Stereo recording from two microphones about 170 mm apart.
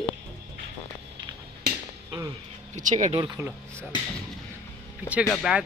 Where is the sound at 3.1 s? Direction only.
25° right (ahead or behind).